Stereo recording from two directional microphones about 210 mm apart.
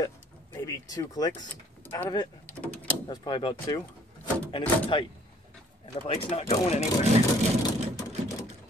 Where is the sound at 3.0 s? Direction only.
20° left (ahead or behind).